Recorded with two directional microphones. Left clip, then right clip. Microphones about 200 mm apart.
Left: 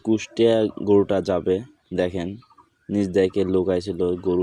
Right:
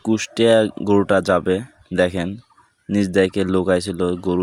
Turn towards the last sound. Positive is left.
turn(degrees=-45)  # may be behind; listen again after turning